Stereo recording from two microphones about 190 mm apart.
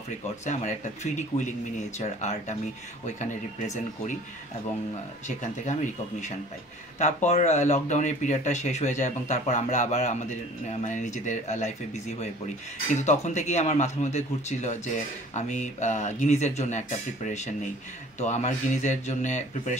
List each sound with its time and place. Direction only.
0.5 s speech: 40° left (ahead or behind)
7.0 s speech: 35° left (ahead or behind)